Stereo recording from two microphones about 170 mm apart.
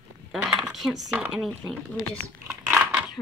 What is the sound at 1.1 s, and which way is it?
Speech, 5° right (ahead or behind).